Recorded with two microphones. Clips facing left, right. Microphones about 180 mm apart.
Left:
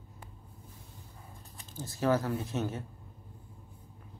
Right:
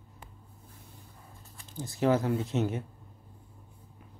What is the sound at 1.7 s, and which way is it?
Speech, 20° right (ahead or behind).